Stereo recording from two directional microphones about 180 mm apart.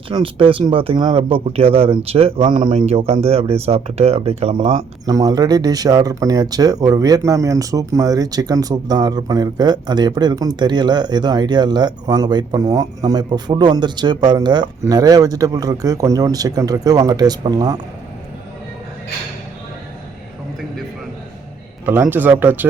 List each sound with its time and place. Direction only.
0.1 s speech: 30° right (ahead or behind)
21.8 s speech: 10° right (ahead or behind)